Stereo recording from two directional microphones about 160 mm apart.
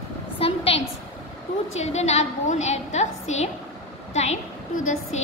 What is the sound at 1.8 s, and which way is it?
A woman's voice, 45° left (ahead or behind).